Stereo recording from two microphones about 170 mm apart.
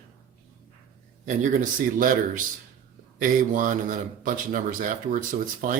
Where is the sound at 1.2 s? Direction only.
50° right (ahead or behind).